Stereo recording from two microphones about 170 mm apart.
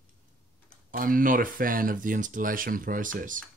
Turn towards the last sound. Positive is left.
turn(degrees=-50)  # may be behind; listen again after turning